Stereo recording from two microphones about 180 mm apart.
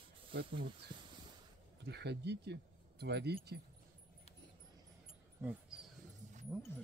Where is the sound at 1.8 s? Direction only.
65° right (ahead or behind).